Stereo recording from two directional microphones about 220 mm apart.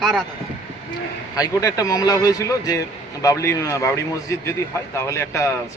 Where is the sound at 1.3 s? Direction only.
15° left (ahead or behind).